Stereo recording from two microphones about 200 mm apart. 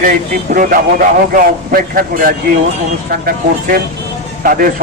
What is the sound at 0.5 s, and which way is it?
Speech, 45° right (ahead or behind).